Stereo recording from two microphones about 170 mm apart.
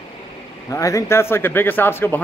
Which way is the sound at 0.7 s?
20° left (ahead or behind).